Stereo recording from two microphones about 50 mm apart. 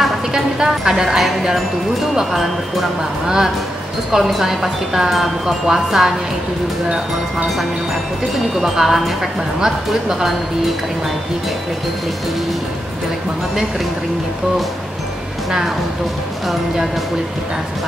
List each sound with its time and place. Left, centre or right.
0.3 s a woman's voice: centre
8.5 s a woman's voice: centre